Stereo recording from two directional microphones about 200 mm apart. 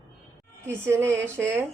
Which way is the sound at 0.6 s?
10° right (ahead or behind).